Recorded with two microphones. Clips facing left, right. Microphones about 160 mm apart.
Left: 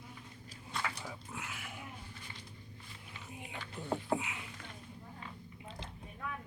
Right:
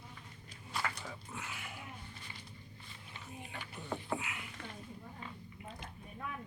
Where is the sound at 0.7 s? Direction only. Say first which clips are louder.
Even; centre (ahead or behind).